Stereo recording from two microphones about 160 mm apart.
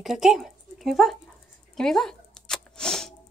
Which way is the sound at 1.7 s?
5° left (ahead or behind).